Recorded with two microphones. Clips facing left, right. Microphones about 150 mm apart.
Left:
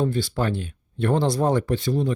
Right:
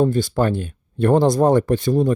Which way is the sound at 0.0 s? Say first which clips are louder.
Right 6 dB; 45° right (ahead or behind).